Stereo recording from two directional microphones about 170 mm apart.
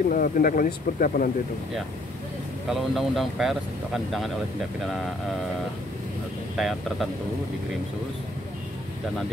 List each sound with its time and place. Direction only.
0.1 s speech: 55° left (ahead or behind)
2.7 s speech: centre (ahead or behind)
6.5 s speech: centre (ahead or behind)